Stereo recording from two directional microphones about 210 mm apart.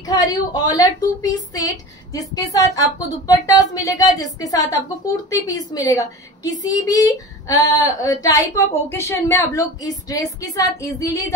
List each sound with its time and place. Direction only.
0.0 s a woman's voice: 20° left (ahead or behind)